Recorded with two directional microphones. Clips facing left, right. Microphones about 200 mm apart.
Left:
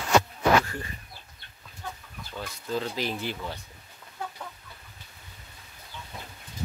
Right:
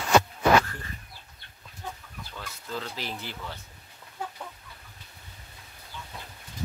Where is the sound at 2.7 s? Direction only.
15° left (ahead or behind).